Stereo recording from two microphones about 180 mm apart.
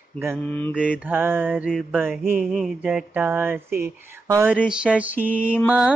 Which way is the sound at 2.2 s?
5° right (ahead or behind).